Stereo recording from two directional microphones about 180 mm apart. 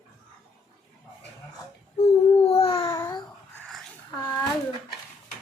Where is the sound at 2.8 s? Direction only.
15° left (ahead or behind).